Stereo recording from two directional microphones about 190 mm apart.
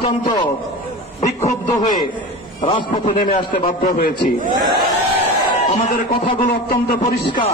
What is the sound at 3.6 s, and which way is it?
Speech, 45° left (ahead or behind).